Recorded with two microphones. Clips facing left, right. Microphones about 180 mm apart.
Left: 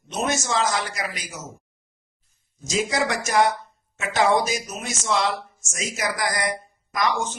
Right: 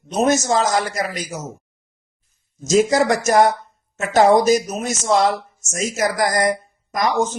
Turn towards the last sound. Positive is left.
turn(degrees=-40)  # may be behind; listen again after turning